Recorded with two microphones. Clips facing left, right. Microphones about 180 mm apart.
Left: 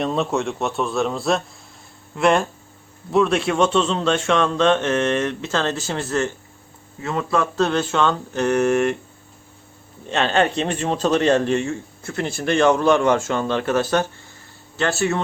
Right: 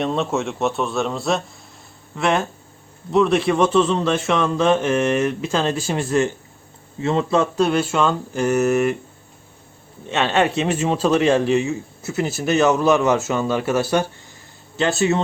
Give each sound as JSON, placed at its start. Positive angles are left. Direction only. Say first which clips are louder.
{"t": 0.0, "sound": "a man's voice", "louder": "even", "side_deg": 0}
{"t": 7.0, "sound": "a man's voice", "louder": "right 3 dB", "side_deg": -25}
{"t": 10.1, "sound": "a man's voice", "louder": "even", "side_deg": -5}